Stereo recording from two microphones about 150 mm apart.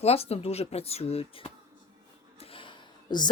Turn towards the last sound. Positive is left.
turn(degrees=30)  # may be behind; listen again after turning